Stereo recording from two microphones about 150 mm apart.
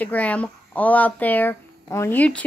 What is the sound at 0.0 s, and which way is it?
Speech, 10° left (ahead or behind).